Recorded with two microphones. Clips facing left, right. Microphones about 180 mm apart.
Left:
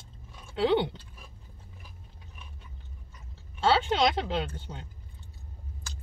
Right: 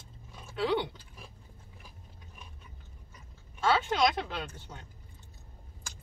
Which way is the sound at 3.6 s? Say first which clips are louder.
Left 3 dB; 30° left (ahead or behind).